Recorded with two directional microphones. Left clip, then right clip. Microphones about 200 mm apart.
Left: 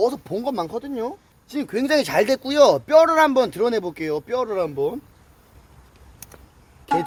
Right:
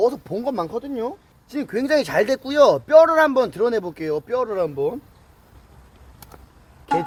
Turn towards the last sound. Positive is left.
turn(degrees=0)  # may be behind; listen again after turning